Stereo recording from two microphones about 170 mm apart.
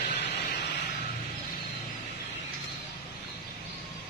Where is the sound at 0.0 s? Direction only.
90° left.